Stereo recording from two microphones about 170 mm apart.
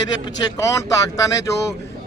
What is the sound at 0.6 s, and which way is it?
Speech, 20° left (ahead or behind).